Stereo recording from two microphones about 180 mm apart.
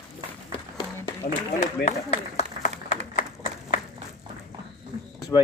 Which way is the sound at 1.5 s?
35° left (ahead or behind).